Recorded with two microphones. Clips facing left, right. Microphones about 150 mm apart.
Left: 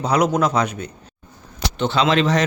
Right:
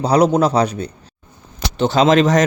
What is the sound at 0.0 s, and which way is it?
Speech, 35° right (ahead or behind).